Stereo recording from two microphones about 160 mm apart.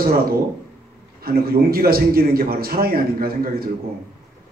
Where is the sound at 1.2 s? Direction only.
70° right (ahead or behind).